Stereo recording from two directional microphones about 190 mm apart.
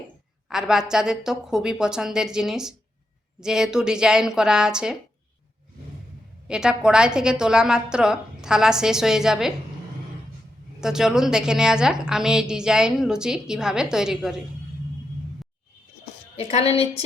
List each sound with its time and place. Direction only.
0.5 s a woman's voice: 5° right (ahead or behind)
6.5 s a woman's voice: 5° right (ahead or behind)
10.8 s a woman's voice: 5° right (ahead or behind)
16.3 s a woman's voice: 35° left (ahead or behind)